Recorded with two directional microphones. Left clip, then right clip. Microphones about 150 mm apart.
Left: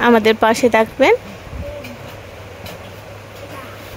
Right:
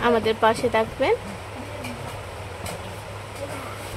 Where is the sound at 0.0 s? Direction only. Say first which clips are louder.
Left 7 dB; 55° left (ahead or behind).